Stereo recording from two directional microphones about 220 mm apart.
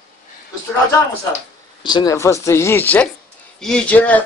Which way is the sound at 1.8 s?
20° left (ahead or behind).